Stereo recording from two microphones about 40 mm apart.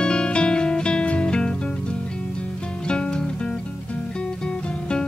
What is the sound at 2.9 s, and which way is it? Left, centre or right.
Music, left.